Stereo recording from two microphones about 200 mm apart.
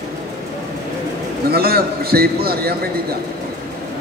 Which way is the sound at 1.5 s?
50° right (ahead or behind).